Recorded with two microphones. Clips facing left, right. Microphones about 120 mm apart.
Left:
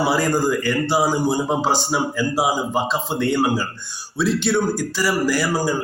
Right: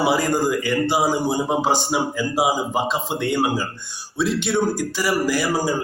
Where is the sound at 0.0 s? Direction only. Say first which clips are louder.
Even; 15° right (ahead or behind).